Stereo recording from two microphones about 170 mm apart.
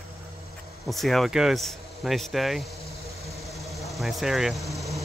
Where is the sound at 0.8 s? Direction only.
Centre (ahead or behind).